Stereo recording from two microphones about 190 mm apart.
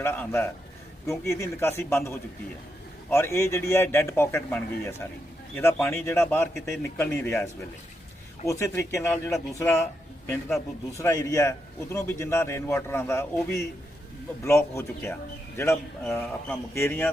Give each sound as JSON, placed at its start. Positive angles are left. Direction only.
{"t": 0.0, "sound": "a man's voice", "side_deg": 10}
{"t": 8.4, "sound": "a man's voice", "side_deg": 15}